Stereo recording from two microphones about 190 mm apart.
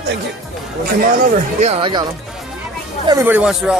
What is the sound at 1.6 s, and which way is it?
Speech, 30° right (ahead or behind).